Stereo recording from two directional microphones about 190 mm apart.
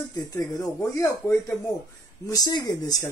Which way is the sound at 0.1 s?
20° left (ahead or behind).